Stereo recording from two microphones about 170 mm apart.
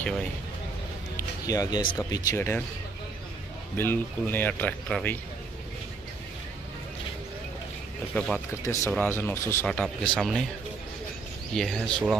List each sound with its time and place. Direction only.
0.0 s speech: 5° left (ahead or behind)
1.1 s music: 20° left (ahead or behind)
2.0 s speech: 20° left (ahead or behind)
3.7 s speech: 10° left (ahead or behind)
8.1 s speech: 5° left (ahead or behind)
11.5 s speech: 5° left (ahead or behind)